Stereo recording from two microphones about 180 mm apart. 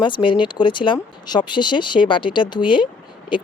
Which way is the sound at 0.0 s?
25° left (ahead or behind).